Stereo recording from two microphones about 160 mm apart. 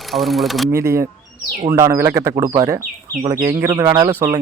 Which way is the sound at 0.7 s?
15° right (ahead or behind).